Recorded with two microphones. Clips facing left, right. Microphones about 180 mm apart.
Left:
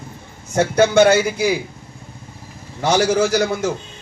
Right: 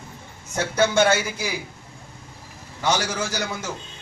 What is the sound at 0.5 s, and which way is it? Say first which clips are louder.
Speech: left 7 dB; 65° left (ahead or behind).